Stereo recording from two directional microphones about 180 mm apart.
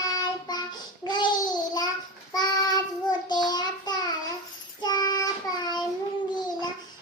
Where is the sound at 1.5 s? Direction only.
20° left (ahead or behind).